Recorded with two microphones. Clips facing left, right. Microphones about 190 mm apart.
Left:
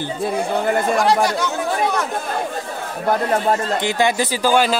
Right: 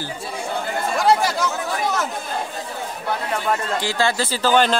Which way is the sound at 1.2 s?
Centre (ahead or behind).